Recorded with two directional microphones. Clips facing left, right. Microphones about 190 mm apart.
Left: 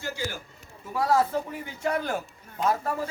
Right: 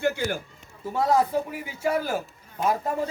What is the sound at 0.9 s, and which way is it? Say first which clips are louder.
A man's voice: right 2 dB; 20° right (ahead or behind).